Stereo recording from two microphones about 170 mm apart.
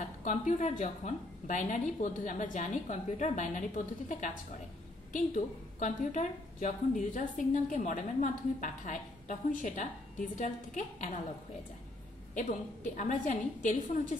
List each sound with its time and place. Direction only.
0.0 s a woman's voice: 45° left (ahead or behind)
12.4 s a woman's voice: 45° left (ahead or behind)